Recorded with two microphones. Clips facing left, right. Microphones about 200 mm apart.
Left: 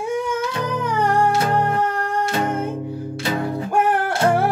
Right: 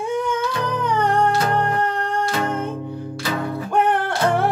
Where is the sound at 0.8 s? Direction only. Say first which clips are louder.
Even; 10° left (ahead or behind).